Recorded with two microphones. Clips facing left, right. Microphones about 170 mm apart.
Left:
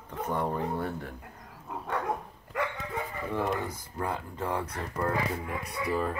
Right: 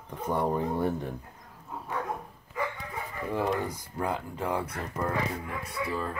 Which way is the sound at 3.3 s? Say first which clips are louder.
Right 2 dB; 15° right (ahead or behind).